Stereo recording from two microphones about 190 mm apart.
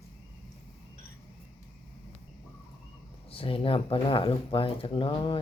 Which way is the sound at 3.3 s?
30° left (ahead or behind).